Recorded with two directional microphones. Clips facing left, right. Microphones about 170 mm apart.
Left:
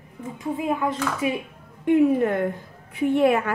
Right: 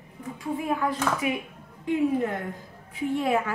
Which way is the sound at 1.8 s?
60° left (ahead or behind).